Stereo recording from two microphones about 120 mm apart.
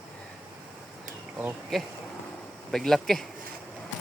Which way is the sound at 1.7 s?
Centre (ahead or behind).